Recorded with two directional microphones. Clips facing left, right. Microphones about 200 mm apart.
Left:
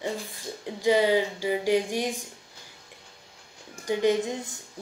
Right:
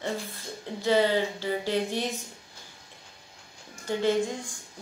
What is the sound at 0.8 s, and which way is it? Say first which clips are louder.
Speech: left 2 dB; 15° left (ahead or behind).